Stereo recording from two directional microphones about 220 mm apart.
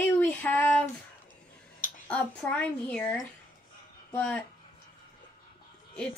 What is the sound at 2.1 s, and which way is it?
A woman's voice, 5° left (ahead or behind).